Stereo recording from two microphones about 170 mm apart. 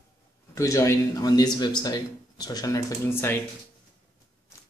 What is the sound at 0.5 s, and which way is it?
Speech, 20° left (ahead or behind).